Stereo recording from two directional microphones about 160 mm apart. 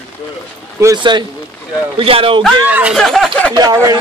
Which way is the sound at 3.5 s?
25° right (ahead or behind).